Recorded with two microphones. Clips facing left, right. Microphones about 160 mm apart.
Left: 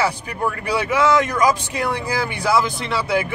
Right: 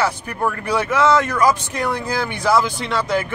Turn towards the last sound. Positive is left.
turn(degrees=5)  # may be behind; listen again after turning